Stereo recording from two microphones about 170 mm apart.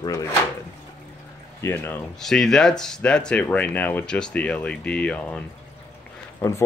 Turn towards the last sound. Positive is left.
turn(degrees=20)  # may be behind; listen again after turning